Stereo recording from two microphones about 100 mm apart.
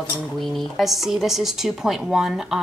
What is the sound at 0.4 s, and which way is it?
Speech, centre (ahead or behind).